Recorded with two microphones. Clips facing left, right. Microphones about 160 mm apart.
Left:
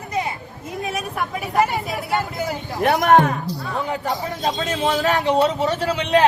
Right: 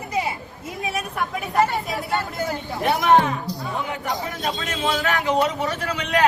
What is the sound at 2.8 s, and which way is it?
Speech, 50° left (ahead or behind).